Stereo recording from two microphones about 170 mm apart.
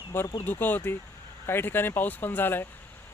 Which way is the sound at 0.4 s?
10° left (ahead or behind).